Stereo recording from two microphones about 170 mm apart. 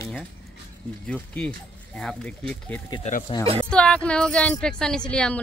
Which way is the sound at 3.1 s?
50° left (ahead or behind).